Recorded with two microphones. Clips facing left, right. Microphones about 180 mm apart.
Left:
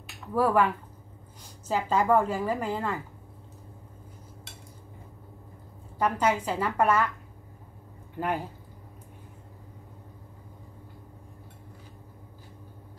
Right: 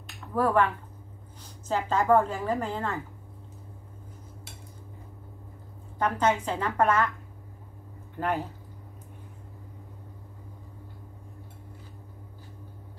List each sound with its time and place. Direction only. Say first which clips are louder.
0.0 s a sound: left 1 dB; 10° left (ahead or behind)
1.7 s a woman's voice: right 1 dB; 10° left (ahead or behind)
5.9 s a woman's voice: even; 10° left (ahead or behind)